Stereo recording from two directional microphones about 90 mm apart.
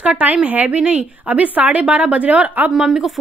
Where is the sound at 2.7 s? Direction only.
5° right (ahead or behind).